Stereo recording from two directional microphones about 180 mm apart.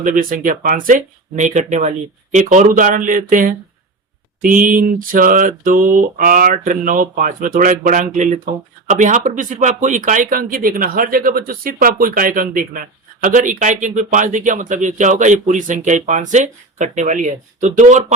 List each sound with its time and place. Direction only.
0.0 s speech: 50° right (ahead or behind)